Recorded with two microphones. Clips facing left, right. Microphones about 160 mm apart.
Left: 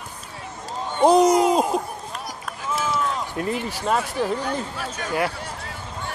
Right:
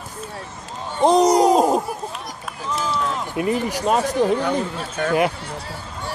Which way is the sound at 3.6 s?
15° right (ahead or behind).